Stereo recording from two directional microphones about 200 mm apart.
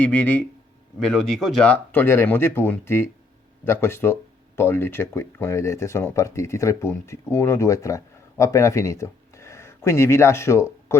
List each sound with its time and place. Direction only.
0.0 s speech: 10° left (ahead or behind)